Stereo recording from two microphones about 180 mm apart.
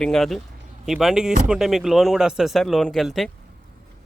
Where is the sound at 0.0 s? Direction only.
Centre (ahead or behind).